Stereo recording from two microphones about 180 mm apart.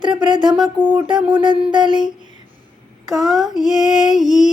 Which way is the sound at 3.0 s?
Centre (ahead or behind).